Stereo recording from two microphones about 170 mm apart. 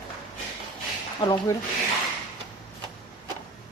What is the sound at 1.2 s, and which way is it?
Speech, 25° left (ahead or behind).